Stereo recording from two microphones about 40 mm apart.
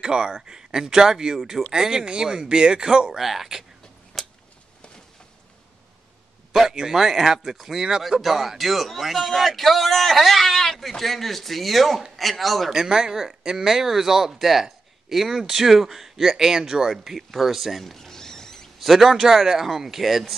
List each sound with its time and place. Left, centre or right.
0.0 s speech: right
4.1 s a sound: centre
6.7 s a man's voice: centre
12.7 s speech: centre
17.3 s a sound: centre
18.8 s a man's voice: centre